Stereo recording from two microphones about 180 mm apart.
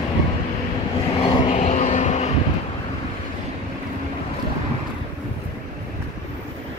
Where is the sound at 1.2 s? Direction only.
35° left (ahead or behind).